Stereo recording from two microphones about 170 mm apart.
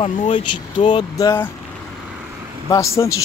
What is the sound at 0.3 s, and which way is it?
Speech, 30° left (ahead or behind).